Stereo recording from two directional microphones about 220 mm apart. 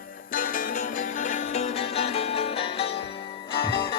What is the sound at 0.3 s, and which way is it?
Music, 40° left (ahead or behind).